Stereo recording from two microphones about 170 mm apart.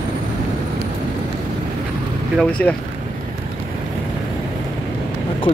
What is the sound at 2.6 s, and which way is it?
Speech, 10° left (ahead or behind).